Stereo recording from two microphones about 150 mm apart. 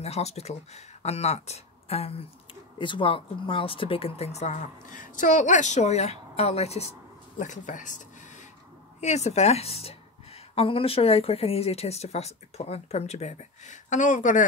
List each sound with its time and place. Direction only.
0.0 s speech: 45° left (ahead or behind)
7.3 s speech: 55° left (ahead or behind)
9.0 s speech: 50° left (ahead or behind)